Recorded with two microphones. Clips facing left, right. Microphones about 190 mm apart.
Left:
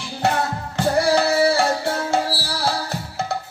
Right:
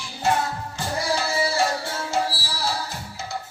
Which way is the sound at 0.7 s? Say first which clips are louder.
Left 9 dB; 65° left (ahead or behind).